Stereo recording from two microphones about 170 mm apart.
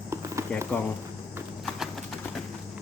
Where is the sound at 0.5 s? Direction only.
5° left (ahead or behind).